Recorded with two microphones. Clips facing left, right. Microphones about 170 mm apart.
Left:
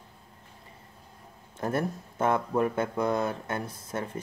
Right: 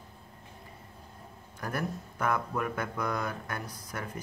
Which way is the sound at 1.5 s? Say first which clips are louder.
Left 5 dB; 25° left (ahead or behind).